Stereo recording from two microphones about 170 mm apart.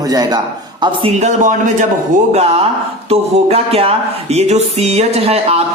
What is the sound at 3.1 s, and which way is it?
Music, 35° right (ahead or behind).